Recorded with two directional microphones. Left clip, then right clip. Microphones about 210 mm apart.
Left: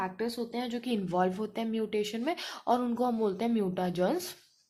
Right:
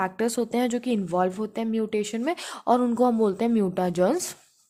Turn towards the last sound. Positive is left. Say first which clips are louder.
# right 7 dB
turn(degrees=-30)  # may be behind; listen again after turning